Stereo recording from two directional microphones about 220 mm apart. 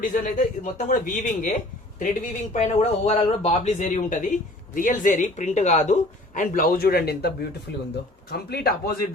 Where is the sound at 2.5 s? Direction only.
30° left (ahead or behind).